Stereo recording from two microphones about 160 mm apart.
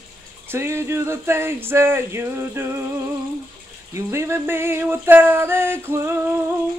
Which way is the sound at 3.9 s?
15° right (ahead or behind).